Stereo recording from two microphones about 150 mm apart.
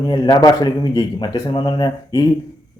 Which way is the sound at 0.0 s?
30° left (ahead or behind).